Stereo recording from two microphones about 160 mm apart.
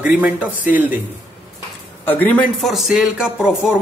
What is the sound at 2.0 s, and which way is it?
Speech, 10° left (ahead or behind).